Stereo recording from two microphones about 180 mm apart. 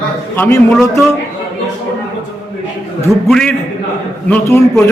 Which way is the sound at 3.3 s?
5° left (ahead or behind).